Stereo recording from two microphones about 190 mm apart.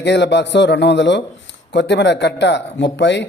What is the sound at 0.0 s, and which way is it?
Speech, 65° left (ahead or behind).